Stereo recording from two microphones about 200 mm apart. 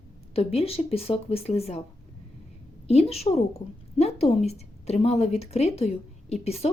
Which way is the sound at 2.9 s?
30° left (ahead or behind).